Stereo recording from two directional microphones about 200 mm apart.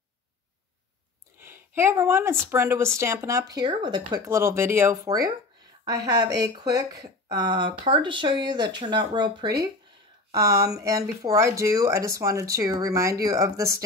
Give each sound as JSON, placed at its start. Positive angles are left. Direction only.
{"t": 1.4, "sound": "a woman's voice", "side_deg": -10}
{"t": 6.4, "sound": "a woman's voice", "side_deg": -20}